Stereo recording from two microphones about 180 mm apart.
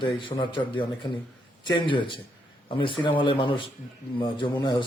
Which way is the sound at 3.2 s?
30° left (ahead or behind).